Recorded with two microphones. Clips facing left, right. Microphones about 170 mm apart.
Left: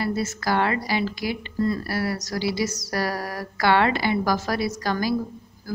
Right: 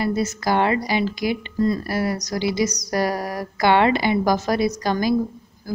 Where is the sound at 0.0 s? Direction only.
20° right (ahead or behind).